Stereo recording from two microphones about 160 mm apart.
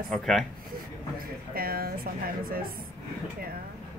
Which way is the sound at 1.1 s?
70° right (ahead or behind).